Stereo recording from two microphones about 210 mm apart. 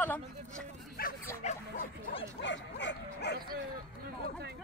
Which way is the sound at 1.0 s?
45° left (ahead or behind).